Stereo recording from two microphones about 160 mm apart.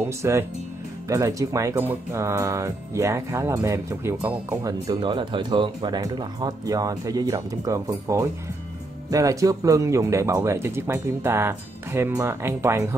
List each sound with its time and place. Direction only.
0.2 s speech: 15° right (ahead or behind)